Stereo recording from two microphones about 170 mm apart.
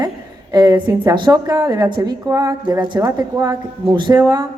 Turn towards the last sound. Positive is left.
turn(degrees=-20)  # may be behind; listen again after turning